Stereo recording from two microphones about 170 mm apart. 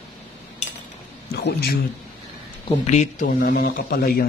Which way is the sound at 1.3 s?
75° left (ahead or behind).